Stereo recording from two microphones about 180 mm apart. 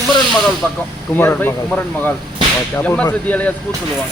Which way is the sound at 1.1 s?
10° left (ahead or behind).